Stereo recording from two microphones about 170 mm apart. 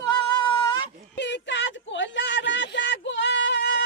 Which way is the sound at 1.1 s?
90° left.